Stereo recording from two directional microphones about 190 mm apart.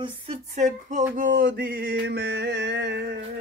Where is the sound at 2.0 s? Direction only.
65° right (ahead or behind).